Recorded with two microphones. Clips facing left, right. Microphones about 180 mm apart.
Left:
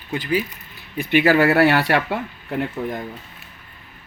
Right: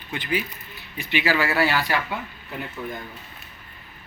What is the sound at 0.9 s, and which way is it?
Speech, 55° left (ahead or behind).